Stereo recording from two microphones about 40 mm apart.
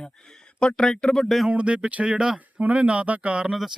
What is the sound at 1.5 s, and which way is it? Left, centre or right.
Speech, right.